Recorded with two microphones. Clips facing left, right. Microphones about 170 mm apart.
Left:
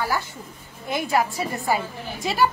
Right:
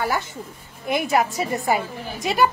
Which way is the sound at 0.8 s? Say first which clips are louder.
Right 2 dB; 20° right (ahead or behind).